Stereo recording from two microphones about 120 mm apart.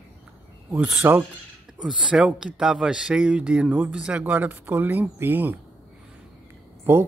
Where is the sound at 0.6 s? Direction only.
15° right (ahead or behind).